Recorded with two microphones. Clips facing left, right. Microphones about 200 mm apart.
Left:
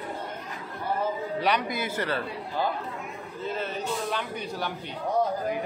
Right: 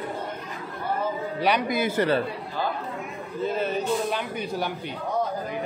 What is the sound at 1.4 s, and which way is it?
Speech, 10° right (ahead or behind).